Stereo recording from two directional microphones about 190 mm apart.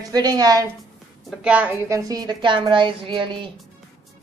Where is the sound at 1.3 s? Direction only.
5° right (ahead or behind).